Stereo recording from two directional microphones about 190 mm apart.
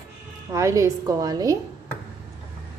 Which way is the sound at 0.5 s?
15° right (ahead or behind).